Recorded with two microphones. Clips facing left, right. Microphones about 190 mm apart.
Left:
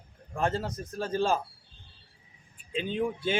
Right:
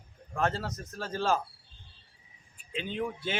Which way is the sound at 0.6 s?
15° left (ahead or behind).